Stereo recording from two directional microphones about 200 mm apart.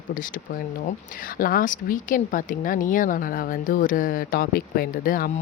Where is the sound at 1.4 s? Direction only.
45° left (ahead or behind).